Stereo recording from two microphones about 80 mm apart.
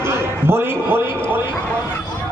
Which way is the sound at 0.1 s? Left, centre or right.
Right.